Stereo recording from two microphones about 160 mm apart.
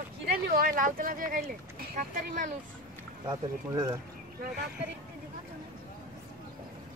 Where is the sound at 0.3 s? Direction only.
65° right (ahead or behind).